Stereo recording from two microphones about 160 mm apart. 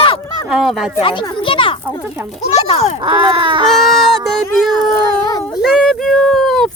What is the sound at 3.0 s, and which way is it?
Speech, 30° right (ahead or behind).